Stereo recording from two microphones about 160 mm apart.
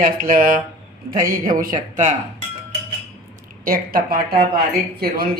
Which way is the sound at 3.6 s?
65° right (ahead or behind).